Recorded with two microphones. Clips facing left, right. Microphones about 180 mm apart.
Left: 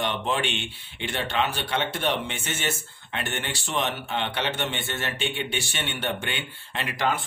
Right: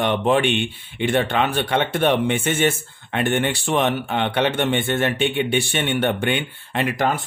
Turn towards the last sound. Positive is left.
turn(degrees=-50)  # may be behind; listen again after turning